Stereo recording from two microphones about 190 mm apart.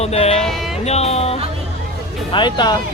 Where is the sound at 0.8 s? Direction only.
35° left (ahead or behind).